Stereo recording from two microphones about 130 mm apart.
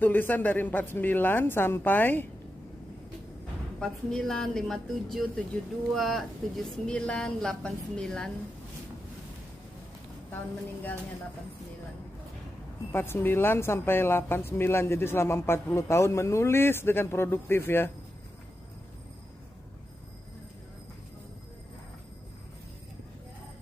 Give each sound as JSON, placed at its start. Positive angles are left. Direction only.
{"t": 0.0, "sound": "speech", "side_deg": 15}
{"t": 3.8, "sound": "speech", "side_deg": 5}
{"t": 10.3, "sound": "speech", "side_deg": 15}
{"t": 12.9, "sound": "speech", "side_deg": 15}